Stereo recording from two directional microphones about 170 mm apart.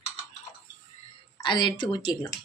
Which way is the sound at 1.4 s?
25° left (ahead or behind).